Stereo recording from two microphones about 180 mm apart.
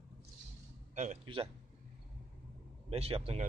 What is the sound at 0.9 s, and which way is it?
Speech, 40° right (ahead or behind).